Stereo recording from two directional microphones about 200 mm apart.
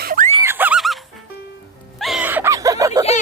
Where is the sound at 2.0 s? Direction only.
5° right (ahead or behind).